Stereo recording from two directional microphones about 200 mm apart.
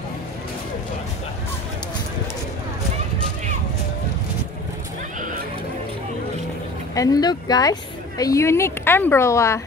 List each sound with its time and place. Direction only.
7.0 s speech: 20° left (ahead or behind)